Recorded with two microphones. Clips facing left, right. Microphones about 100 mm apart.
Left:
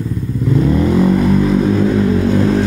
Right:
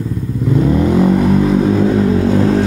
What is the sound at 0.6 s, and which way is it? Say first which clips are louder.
Vehicle: right 1 dB; 20° right (ahead or behind).